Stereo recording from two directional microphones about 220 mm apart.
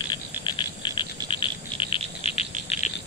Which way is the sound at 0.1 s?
20° left (ahead or behind).